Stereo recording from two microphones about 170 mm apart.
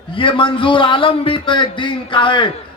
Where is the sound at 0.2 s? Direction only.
30° left (ahead or behind).